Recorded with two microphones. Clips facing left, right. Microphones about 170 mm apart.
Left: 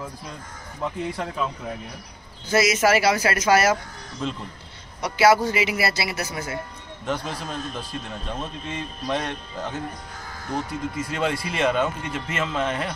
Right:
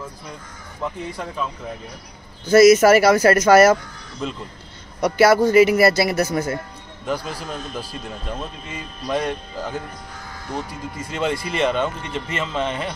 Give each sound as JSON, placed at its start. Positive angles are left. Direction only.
{"t": 2.5, "sound": "a man's voice", "side_deg": -45}
{"t": 4.2, "sound": "speech", "side_deg": 0}
{"t": 5.0, "sound": "a man's voice", "side_deg": -50}
{"t": 7.1, "sound": "speech", "side_deg": 0}
{"t": 11.1, "sound": "speech", "side_deg": 0}